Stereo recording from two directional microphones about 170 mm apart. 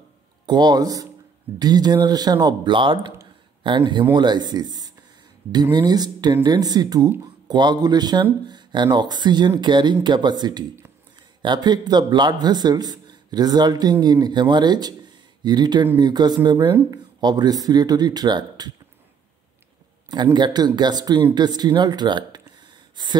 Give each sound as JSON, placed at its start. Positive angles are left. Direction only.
{"t": 0.5, "sound": "a man's voice", "side_deg": -25}
{"t": 20.3, "sound": "a man's voice", "side_deg": -25}